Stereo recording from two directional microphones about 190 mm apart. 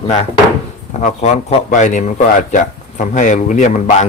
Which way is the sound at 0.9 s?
40° left (ahead or behind).